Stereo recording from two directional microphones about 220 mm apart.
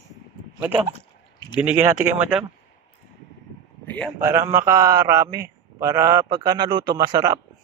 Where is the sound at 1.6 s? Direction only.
10° right (ahead or behind).